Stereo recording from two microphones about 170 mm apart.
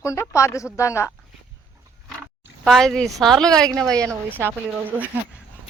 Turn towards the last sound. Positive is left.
turn(degrees=-10)  # may be behind; listen again after turning